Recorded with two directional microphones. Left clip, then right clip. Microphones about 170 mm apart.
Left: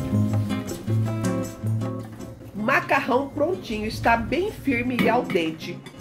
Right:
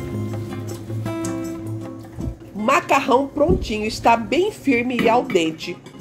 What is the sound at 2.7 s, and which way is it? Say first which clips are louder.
A woman's voice: right 5 dB; 30° right (ahead or behind).